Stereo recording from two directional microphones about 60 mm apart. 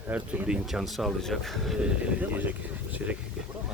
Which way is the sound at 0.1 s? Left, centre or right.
Right.